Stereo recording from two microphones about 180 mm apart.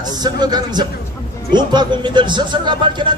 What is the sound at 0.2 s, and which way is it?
A man's voice, 25° right (ahead or behind).